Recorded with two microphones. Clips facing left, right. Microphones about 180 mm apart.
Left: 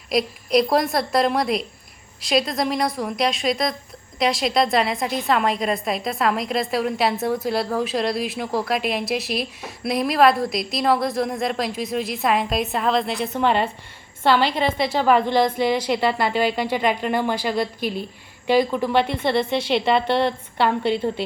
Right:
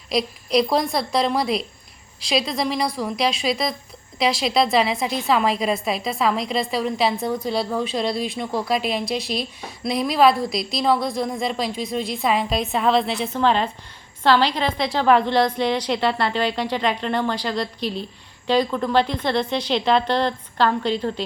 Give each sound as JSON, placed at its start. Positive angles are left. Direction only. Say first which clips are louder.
{"t": 0.1, "sound": "speech", "louder": "left 1 dB", "side_deg": 0}
{"t": 13.3, "sound": "a woman's voice", "louder": "even", "side_deg": 10}
{"t": 17.7, "sound": "a woman's voice", "louder": "left 1 dB", "side_deg": 55}
{"t": 18.4, "sound": "a woman's voice", "louder": "left 1 dB", "side_deg": 10}